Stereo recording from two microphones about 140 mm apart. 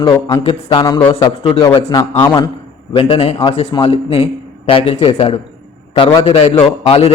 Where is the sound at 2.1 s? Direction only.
20° left (ahead or behind).